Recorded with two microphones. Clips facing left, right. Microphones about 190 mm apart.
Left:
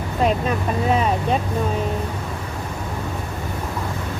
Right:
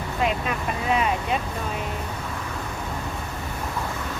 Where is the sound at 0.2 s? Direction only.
40° left (ahead or behind).